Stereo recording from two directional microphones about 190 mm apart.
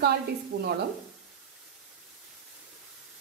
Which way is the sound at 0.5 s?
70° right (ahead or behind).